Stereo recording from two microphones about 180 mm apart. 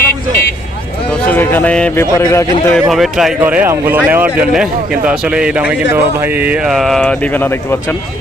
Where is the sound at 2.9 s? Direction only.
Centre (ahead or behind).